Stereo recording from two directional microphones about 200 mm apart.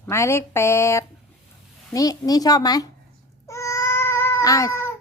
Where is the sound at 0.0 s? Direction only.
15° left (ahead or behind).